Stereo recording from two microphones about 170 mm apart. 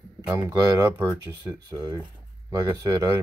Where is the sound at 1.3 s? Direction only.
25° right (ahead or behind).